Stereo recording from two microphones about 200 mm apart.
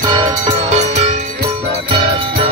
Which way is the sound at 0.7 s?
35° right (ahead or behind).